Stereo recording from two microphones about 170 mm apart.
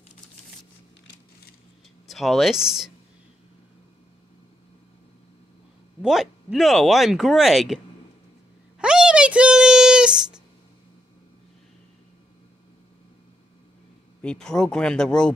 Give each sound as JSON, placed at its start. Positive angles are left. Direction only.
{"t": 2.0, "sound": "speech", "side_deg": 0}
{"t": 6.0, "sound": "speech", "side_deg": 0}
{"t": 8.7, "sound": "a sound", "side_deg": -5}
{"t": 14.2, "sound": "speech", "side_deg": 5}